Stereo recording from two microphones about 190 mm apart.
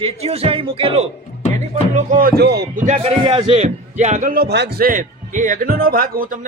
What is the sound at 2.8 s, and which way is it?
A man's voice, 35° right (ahead or behind).